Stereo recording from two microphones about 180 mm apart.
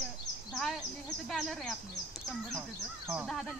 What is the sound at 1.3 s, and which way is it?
Speech, centre (ahead or behind).